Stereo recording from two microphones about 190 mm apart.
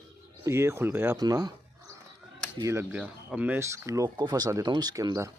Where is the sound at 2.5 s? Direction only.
15° right (ahead or behind).